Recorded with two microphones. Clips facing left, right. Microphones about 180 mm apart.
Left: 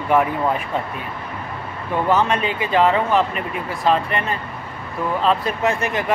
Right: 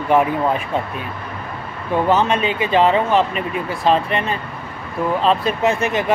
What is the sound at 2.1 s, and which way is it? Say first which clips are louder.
Speech: right 1 dB; 25° right (ahead or behind).